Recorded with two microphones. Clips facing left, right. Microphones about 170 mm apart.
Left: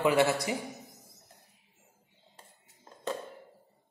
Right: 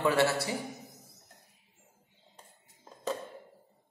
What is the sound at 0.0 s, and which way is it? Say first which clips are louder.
Speech: left 1 dB; 20° left (ahead or behind).